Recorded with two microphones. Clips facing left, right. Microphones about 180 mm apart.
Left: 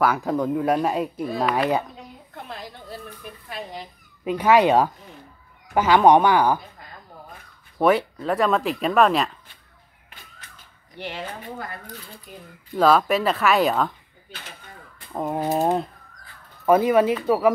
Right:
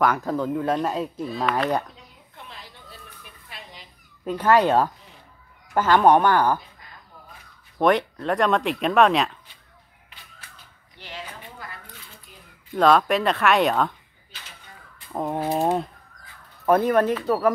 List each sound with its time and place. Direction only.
0.0 s speech: 10° left (ahead or behind)
2.3 s a sound: 55° left (ahead or behind)
3.4 s dog: 50° left (ahead or behind)
4.2 s speech: 10° left (ahead or behind)
7.8 s speech: 5° left (ahead or behind)
11.0 s speech: 65° left (ahead or behind)
11.4 s speech: 50° left (ahead or behind)
12.7 s speech: centre (ahead or behind)
15.1 s speech: centre (ahead or behind)
16.6 s speech: 5° left (ahead or behind)